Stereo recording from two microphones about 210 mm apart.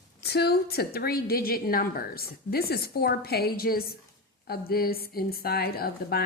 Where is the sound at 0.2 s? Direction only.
50° left (ahead or behind).